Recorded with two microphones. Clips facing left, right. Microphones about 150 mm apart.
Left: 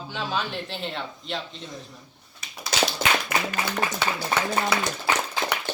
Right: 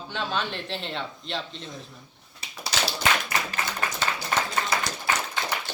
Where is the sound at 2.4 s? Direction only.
30° right (ahead or behind).